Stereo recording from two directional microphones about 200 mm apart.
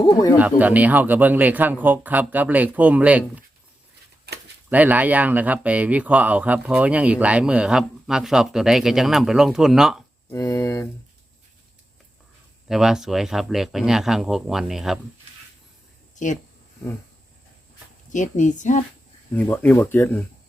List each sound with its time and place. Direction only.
0.0 s speech: 20° left (ahead or behind)
0.3 s speech: 10° right (ahead or behind)
4.7 s speech: 10° right (ahead or behind)
10.3 s speech: 15° left (ahead or behind)
12.6 s speech: centre (ahead or behind)
16.1 s speech: 40° left (ahead or behind)
18.1 s a woman's voice: 40° left (ahead or behind)
19.3 s speech: 10° left (ahead or behind)